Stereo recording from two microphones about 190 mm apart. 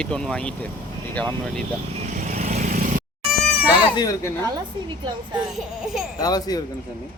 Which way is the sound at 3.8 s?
20° left (ahead or behind).